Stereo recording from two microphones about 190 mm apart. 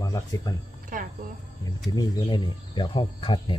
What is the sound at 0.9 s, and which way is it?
Music, 45° right (ahead or behind).